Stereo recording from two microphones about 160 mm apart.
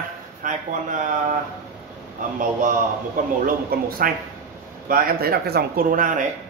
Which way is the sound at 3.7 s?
70° right (ahead or behind).